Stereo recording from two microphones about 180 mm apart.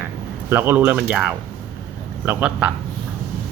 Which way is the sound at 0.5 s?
10° right (ahead or behind).